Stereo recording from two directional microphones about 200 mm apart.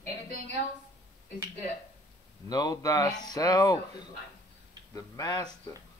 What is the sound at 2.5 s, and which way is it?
Speech, 20° left (ahead or behind).